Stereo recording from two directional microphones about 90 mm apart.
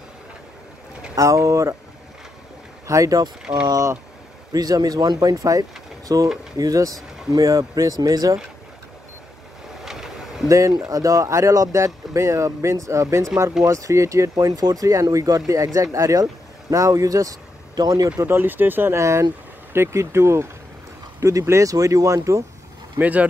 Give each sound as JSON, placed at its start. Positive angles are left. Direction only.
{"t": 1.1, "sound": "speech", "side_deg": -35}
{"t": 2.9, "sound": "speech", "side_deg": -40}
{"t": 9.8, "sound": "a sound", "side_deg": -5}
{"t": 10.5, "sound": "speech", "side_deg": -40}
{"t": 14.3, "sound": "speech", "side_deg": -45}
{"t": 18.2, "sound": "speech", "side_deg": -20}
{"t": 22.9, "sound": "speech", "side_deg": -15}